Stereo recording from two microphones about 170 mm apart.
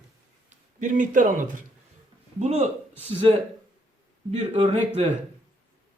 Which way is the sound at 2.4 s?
40° right (ahead or behind).